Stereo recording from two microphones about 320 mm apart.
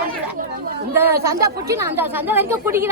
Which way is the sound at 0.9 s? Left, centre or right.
Centre.